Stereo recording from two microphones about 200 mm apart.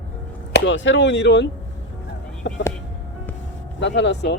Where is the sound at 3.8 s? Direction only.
65° left (ahead or behind).